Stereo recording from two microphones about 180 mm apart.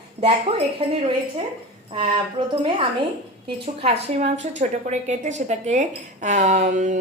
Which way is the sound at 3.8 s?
40° right (ahead or behind).